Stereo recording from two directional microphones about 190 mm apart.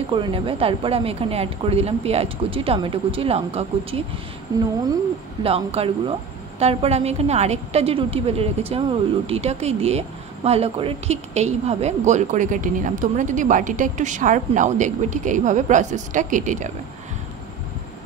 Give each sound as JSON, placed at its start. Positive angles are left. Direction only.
{"t": 0.1, "sound": "speech", "side_deg": -25}
{"t": 4.5, "sound": "speech", "side_deg": -20}
{"t": 5.4, "sound": "a woman's voice", "side_deg": -30}